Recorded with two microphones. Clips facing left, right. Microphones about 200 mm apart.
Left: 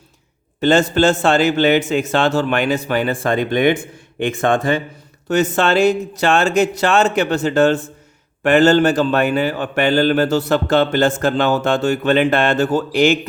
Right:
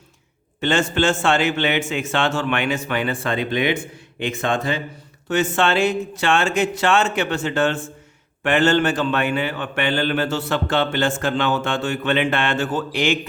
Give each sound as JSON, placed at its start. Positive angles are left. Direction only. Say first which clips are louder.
{"t": 0.6, "sound": "a man's voice", "louder": "left 6 dB", "side_deg": 40}
{"t": 5.3, "sound": "a man's voice", "louder": "left 4 dB", "side_deg": 40}